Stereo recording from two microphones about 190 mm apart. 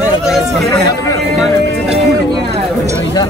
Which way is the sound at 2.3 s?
20° right (ahead or behind).